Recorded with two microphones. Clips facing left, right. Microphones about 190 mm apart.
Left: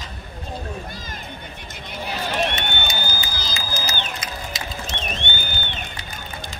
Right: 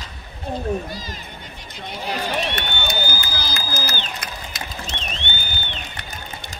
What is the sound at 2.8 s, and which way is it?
Run, 60° right (ahead or behind).